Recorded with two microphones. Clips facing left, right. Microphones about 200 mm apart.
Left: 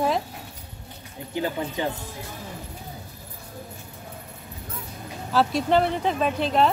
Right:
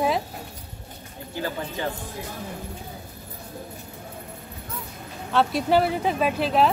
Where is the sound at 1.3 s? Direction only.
20° left (ahead or behind).